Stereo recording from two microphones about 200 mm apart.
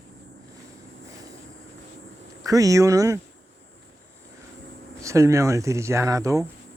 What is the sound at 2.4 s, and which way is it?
Speech, 15° right (ahead or behind).